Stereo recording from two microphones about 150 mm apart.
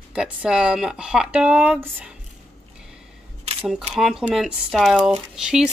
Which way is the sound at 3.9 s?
Centre (ahead or behind).